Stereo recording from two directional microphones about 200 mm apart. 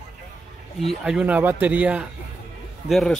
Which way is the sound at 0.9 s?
5° right (ahead or behind).